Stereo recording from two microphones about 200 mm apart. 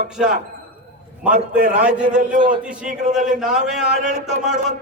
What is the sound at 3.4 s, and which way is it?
A man's voice, centre (ahead or behind).